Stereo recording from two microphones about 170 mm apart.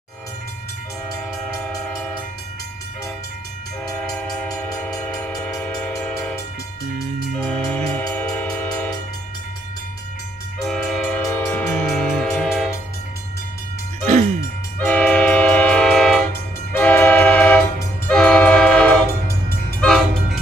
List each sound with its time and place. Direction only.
3.8 s train: centre (ahead or behind)
7.3 s train: 5° left (ahead or behind)
10.6 s train: 5° left (ahead or behind)
14.9 s train: 5° left (ahead or behind)